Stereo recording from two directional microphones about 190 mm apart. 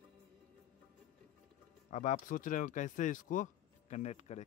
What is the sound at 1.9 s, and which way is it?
A man's voice, 40° left (ahead or behind).